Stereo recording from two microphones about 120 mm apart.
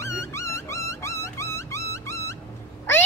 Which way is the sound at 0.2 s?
25° left (ahead or behind).